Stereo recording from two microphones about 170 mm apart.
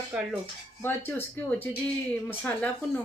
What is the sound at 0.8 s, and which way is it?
Speech, 15° left (ahead or behind).